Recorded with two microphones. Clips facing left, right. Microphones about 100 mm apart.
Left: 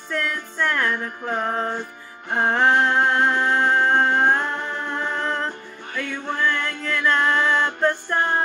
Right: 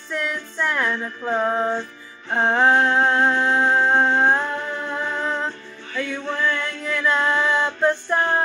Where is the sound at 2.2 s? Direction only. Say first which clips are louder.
Right 1 dB; 10° left (ahead or behind).